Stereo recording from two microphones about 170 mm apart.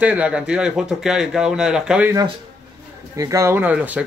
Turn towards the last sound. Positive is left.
turn(degrees=-10)  # may be behind; listen again after turning